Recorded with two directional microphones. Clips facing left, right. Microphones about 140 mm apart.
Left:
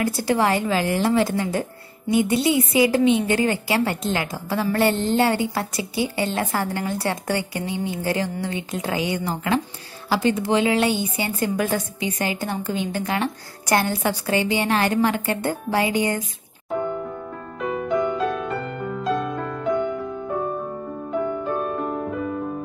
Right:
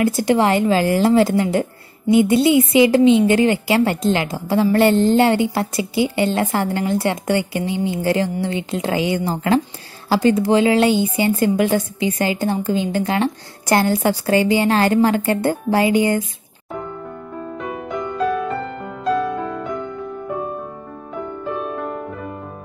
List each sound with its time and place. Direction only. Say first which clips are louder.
0.0 s a woman's voice: right 5 dB; 20° right (ahead or behind)
17.6 s music: left 5 dB; centre (ahead or behind)